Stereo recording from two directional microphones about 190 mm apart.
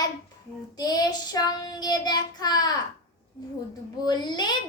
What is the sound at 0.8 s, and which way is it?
A child's voice, 20° left (ahead or behind).